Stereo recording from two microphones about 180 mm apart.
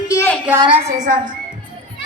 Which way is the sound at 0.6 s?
30° right (ahead or behind).